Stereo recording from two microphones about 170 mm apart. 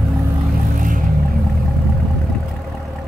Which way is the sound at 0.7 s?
50° right (ahead or behind).